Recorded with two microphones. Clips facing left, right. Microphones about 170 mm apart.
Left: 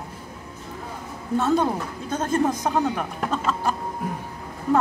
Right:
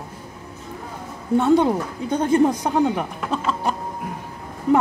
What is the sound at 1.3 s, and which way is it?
A woman's voice, 20° right (ahead or behind).